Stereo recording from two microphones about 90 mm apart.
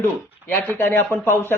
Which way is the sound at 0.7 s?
25° left (ahead or behind).